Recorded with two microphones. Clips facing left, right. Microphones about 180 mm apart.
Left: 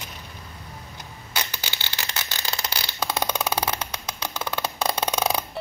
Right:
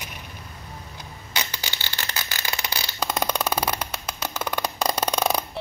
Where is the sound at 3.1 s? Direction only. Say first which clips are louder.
Right 1 dB; 5° left (ahead or behind).